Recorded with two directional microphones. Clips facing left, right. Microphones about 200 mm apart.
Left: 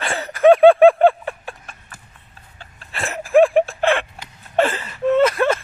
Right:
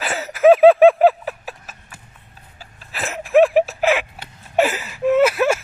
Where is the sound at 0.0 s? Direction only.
5° right (ahead or behind).